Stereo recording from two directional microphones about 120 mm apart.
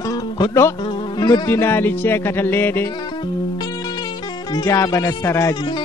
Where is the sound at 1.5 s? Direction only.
20° left (ahead or behind).